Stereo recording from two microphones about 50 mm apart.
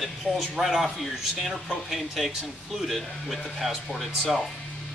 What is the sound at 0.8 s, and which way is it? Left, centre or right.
Speech, centre.